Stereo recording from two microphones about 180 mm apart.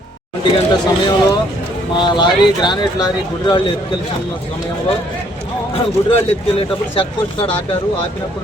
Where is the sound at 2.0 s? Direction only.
25° left (ahead or behind).